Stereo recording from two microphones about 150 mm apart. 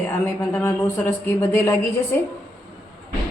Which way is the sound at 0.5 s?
15° left (ahead or behind).